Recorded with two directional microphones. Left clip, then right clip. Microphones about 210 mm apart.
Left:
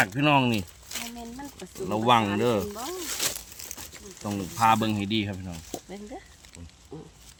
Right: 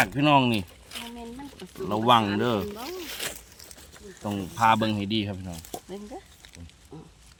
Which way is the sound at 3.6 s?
45° left (ahead or behind).